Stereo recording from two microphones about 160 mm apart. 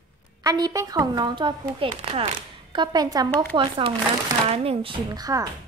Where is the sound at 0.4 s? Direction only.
25° right (ahead or behind).